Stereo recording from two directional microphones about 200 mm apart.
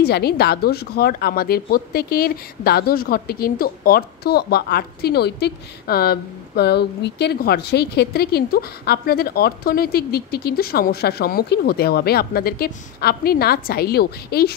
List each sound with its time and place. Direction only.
0.0 s speech: 55° left (ahead or behind)